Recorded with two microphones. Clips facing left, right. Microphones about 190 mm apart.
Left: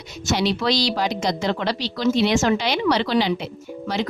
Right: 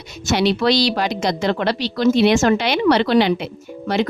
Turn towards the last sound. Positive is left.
turn(degrees=-60)  # may be behind; listen again after turning